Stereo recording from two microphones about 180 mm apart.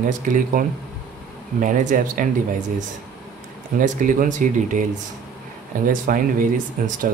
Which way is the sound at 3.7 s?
50° right (ahead or behind).